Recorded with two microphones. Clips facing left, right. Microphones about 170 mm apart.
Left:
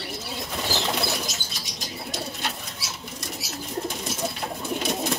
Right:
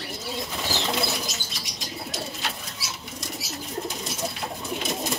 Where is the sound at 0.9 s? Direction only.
Centre (ahead or behind).